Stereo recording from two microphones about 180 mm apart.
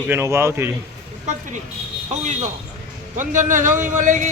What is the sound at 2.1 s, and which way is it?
A man's voice, 40° right (ahead or behind).